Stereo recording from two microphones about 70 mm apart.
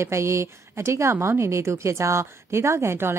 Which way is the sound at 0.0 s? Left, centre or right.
Right.